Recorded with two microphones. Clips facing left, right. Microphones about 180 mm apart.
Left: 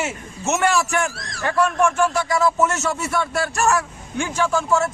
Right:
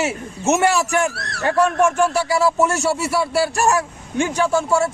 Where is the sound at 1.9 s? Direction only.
15° right (ahead or behind).